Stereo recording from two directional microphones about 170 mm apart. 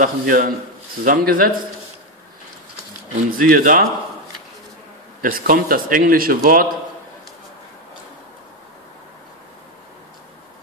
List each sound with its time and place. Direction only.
0.0 s a man's voice: 55° right (ahead or behind)
3.3 s speech: 55° right (ahead or behind)
5.2 s a man's voice: 55° right (ahead or behind)